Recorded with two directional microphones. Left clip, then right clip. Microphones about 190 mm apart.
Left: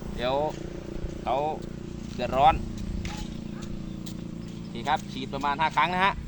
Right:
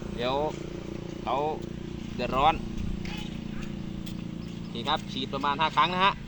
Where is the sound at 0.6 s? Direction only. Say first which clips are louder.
Even; 40° right (ahead or behind).